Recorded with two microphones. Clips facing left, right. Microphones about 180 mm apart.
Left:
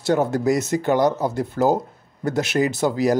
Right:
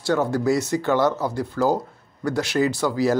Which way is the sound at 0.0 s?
20° left (ahead or behind).